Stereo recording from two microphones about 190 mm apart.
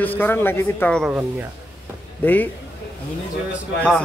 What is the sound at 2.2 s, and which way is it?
Speech, 10° left (ahead or behind).